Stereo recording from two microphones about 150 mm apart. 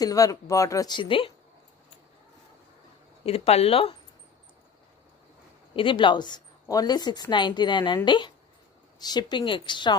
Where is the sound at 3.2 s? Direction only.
40° left (ahead or behind).